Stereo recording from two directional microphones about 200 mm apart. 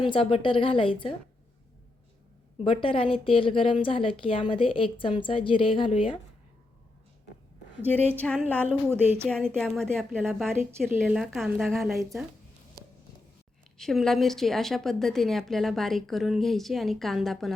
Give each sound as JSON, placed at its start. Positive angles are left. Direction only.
{"t": 0.0, "sound": "a woman's voice", "side_deg": 25}
{"t": 2.6, "sound": "a woman's voice", "side_deg": 25}
{"t": 7.9, "sound": "music", "side_deg": 10}
{"t": 9.2, "sound": "a woman's voice", "side_deg": 5}
{"t": 10.6, "sound": "a woman's voice", "side_deg": -10}
{"t": 13.7, "sound": "a woman's voice", "side_deg": 0}